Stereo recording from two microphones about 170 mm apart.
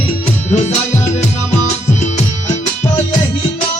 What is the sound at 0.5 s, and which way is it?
Music, 40° left (ahead or behind).